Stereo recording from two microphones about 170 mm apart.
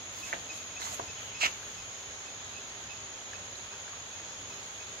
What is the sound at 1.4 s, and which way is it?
Cricket, 65° right (ahead or behind).